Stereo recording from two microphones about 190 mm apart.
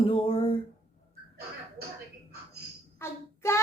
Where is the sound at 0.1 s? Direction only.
30° left (ahead or behind).